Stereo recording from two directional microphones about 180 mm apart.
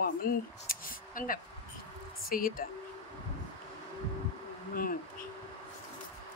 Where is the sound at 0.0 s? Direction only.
55° left (ahead or behind).